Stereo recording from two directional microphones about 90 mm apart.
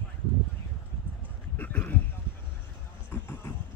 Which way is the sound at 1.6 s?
20° left (ahead or behind).